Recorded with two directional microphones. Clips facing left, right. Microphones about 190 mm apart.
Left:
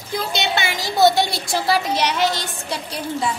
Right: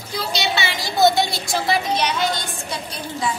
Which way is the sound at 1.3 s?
30° left (ahead or behind).